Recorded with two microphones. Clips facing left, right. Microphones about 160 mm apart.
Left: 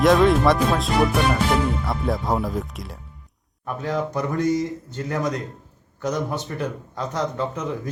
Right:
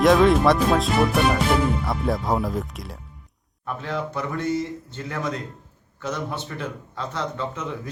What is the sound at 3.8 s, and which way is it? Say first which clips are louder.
Speech: left 4 dB; 40° left (ahead or behind).